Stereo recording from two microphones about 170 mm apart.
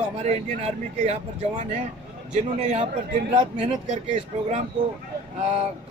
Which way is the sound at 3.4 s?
30° right (ahead or behind).